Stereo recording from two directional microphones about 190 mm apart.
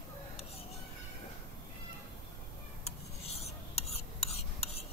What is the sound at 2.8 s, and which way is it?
Stir, 35° left (ahead or behind).